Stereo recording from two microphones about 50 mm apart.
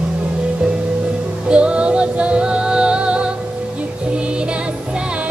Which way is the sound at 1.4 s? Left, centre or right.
Right.